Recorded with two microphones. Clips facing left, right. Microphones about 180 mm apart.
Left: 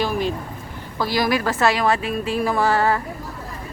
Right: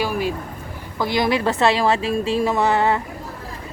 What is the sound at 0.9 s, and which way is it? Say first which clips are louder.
A woman's voice: right 1 dB; 20° right (ahead or behind).